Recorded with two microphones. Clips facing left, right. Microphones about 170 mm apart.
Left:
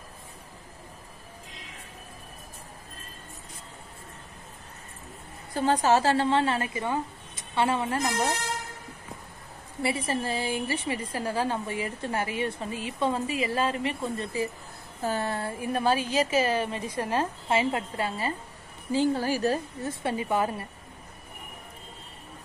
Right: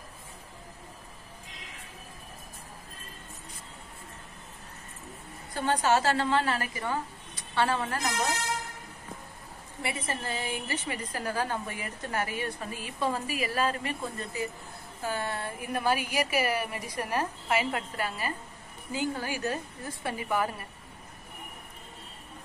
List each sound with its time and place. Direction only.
5.5 s a woman's voice: 35° left (ahead or behind)
9.8 s a woman's voice: 30° left (ahead or behind)